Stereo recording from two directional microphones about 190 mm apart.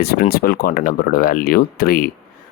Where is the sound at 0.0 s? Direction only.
50° left (ahead or behind).